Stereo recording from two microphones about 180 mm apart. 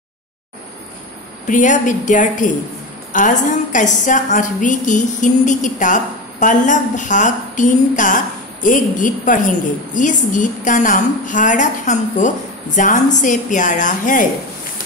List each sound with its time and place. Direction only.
1.5 s a woman's voice: 45° left (ahead or behind)